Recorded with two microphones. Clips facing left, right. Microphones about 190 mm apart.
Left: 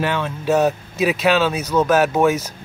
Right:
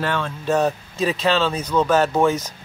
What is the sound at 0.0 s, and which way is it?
Speech, 10° left (ahead or behind).